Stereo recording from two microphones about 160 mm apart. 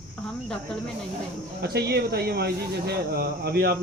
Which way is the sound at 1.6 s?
90° right.